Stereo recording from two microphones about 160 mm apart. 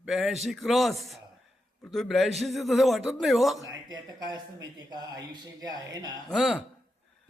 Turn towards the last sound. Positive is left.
turn(degrees=0)  # may be behind; listen again after turning